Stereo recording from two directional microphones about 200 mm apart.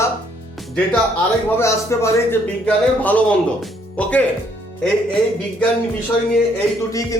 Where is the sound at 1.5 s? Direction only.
15° left (ahead or behind).